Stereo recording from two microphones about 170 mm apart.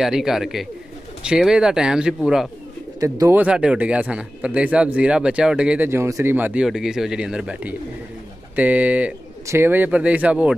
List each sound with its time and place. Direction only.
0.0 s speech: centre (ahead or behind)
3.0 s speech: 20° right (ahead or behind)
3.3 s speech: 5° right (ahead or behind)